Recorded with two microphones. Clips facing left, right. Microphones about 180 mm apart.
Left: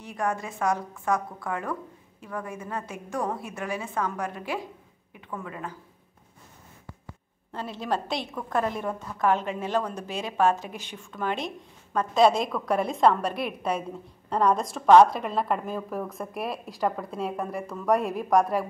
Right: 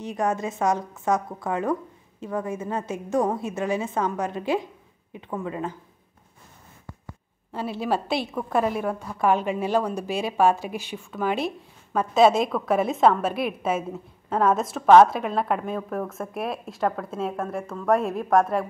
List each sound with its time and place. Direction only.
0.0 s a woman's voice: 20° right (ahead or behind)
7.5 s a woman's voice: 5° right (ahead or behind)